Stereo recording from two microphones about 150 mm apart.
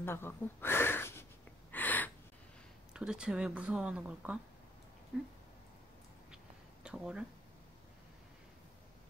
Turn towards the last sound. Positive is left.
turn(degrees=-5)  # may be behind; listen again after turning